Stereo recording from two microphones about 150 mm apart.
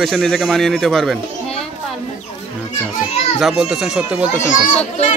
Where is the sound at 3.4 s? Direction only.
5° right (ahead or behind).